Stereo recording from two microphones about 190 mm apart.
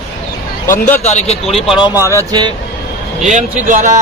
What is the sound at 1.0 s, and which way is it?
Speech, 35° left (ahead or behind).